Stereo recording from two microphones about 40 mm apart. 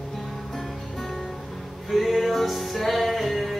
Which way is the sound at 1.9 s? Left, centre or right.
Centre.